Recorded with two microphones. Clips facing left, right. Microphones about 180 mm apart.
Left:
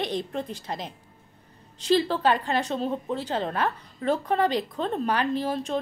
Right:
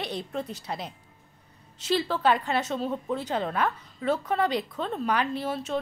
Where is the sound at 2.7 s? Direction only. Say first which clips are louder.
Left 1 dB; 25° left (ahead or behind).